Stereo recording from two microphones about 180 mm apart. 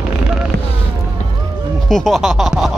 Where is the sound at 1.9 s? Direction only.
Centre (ahead or behind).